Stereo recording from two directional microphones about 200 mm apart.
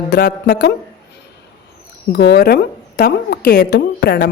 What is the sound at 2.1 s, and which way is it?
A woman's voice, 55° left (ahead or behind).